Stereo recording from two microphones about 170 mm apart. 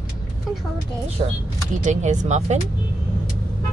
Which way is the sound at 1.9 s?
45° right (ahead or behind).